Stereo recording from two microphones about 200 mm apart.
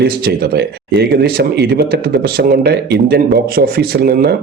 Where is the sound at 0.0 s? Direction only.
50° right (ahead or behind).